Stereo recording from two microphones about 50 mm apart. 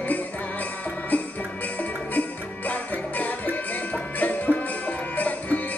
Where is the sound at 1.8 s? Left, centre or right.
Left.